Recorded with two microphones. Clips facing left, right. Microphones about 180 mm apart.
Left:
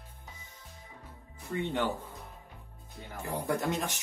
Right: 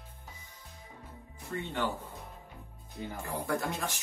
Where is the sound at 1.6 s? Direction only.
15° left (ahead or behind).